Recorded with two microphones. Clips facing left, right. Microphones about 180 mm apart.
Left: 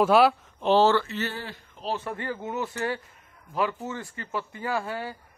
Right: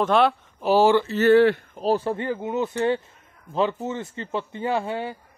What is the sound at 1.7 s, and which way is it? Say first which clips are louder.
Speech: right 9 dB; 40° right (ahead or behind).